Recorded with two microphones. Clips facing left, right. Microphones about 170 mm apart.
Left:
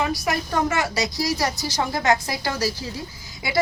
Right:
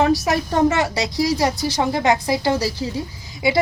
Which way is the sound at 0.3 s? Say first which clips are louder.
Right 5 dB; 25° right (ahead or behind).